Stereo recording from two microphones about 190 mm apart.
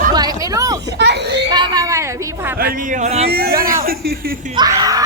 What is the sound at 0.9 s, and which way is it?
Speech, 60° right (ahead or behind).